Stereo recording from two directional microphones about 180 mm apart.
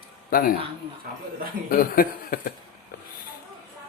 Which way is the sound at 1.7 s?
50° left (ahead or behind).